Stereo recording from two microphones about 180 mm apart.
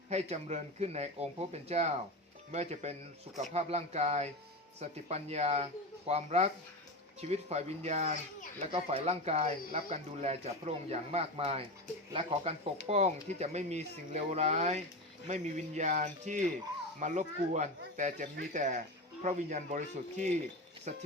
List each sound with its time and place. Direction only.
0.1 s speech: 35° right (ahead or behind)